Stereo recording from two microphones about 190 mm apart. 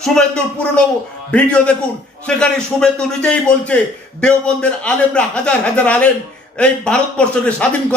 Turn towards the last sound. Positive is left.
turn(degrees=5)  # may be behind; listen again after turning